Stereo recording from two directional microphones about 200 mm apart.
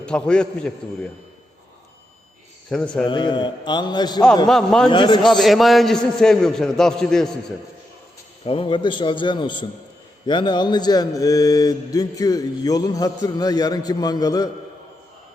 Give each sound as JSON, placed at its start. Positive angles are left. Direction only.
{"t": 0.0, "sound": "a man's voice", "side_deg": 5}
{"t": 2.6, "sound": "a man's voice", "side_deg": 5}
{"t": 3.0, "sound": "mantra", "side_deg": 25}
{"t": 4.4, "sound": "a man's voice", "side_deg": 5}
{"t": 4.9, "sound": "mantra", "side_deg": 25}
{"t": 5.2, "sound": "a man's voice", "side_deg": 0}
{"t": 8.4, "sound": "mantra", "side_deg": 25}